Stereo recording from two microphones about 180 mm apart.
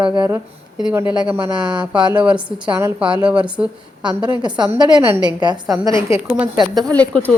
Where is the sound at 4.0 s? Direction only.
25° right (ahead or behind).